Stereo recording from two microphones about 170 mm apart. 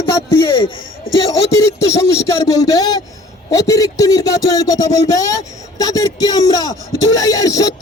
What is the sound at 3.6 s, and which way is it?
Speech, 20° left (ahead or behind).